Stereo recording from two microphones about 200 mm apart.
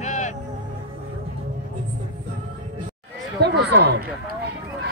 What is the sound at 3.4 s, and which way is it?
Speech, 55° right (ahead or behind).